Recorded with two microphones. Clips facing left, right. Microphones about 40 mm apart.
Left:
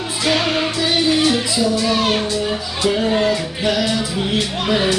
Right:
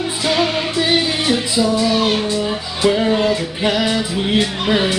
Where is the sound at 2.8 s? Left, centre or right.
Centre.